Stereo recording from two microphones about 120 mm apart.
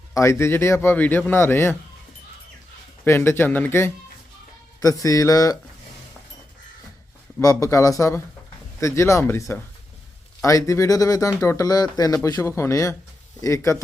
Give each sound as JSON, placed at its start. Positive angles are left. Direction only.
{"t": 0.1, "sound": "speech", "side_deg": 25}
{"t": 3.0, "sound": "speech", "side_deg": 20}
{"t": 7.4, "sound": "speech", "side_deg": 25}